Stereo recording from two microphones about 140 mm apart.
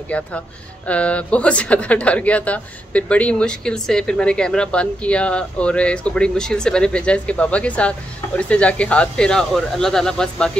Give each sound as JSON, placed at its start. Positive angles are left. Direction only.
{"t": 0.1, "sound": "speech", "side_deg": 10}